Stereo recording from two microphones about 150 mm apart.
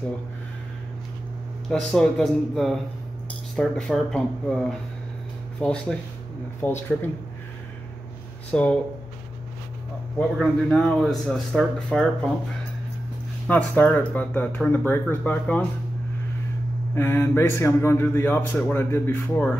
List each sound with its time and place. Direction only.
1.7 s speech: 5° left (ahead or behind)
8.5 s speech: 10° left (ahead or behind)
10.3 s speech: centre (ahead or behind)
13.5 s speech: 10° left (ahead or behind)
16.9 s speech: 15° left (ahead or behind)